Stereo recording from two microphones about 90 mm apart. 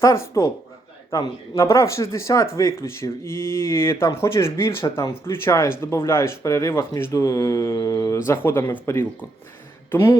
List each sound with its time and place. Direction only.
0.0 s speech: 35° left (ahead or behind)